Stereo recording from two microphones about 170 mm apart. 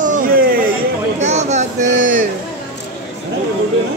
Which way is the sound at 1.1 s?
40° right (ahead or behind).